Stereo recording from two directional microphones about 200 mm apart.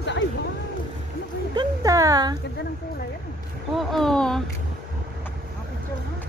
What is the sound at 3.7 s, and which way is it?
Speech, centre (ahead or behind).